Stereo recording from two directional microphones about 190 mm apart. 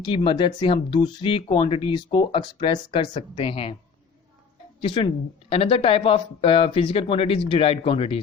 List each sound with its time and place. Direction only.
0.0 s speech: 25° left (ahead or behind)
4.8 s speech: 25° left (ahead or behind)